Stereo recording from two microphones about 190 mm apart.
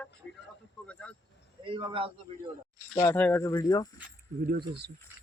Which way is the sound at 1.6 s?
30° right (ahead or behind).